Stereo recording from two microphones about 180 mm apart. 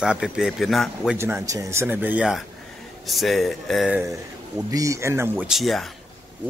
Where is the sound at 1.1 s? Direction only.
15° right (ahead or behind).